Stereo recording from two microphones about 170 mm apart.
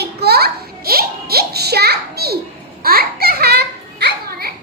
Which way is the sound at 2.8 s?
65° right (ahead or behind).